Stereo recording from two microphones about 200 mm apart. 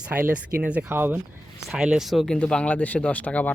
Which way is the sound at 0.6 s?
5° right (ahead or behind).